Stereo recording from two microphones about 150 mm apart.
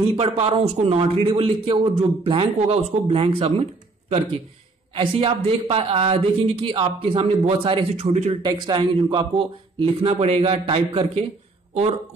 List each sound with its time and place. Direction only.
0.1 s a man's voice: 40° right (ahead or behind)
4.9 s a man's voice: 35° right (ahead or behind)
7.9 s speech: 45° right (ahead or behind)
8.4 s a man's voice: 30° right (ahead or behind)